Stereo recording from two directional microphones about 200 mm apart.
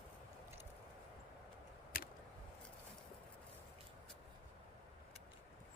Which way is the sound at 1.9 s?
50° left (ahead or behind).